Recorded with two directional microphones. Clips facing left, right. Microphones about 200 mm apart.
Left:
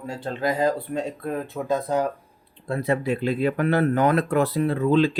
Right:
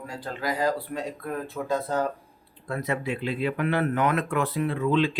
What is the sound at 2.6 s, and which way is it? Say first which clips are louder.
Speech: left 5 dB; 30° left (ahead or behind).